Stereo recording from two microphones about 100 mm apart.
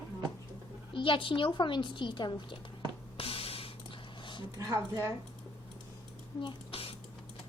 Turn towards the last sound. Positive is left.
turn(degrees=70)  # may be behind; listen again after turning